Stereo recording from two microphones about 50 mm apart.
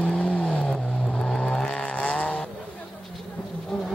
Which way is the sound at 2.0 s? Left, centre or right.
Left.